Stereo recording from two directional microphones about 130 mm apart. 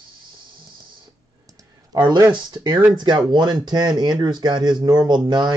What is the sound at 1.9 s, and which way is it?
Speech, 35° right (ahead or behind).